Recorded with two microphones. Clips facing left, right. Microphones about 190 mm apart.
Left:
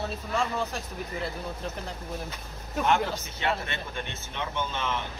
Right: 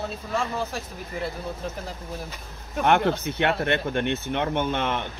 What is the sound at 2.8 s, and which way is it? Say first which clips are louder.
Speech: right 5 dB; 65° right (ahead or behind).